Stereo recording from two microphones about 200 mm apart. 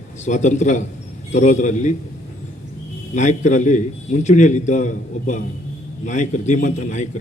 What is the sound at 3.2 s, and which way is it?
A man's voice, 35° left (ahead or behind).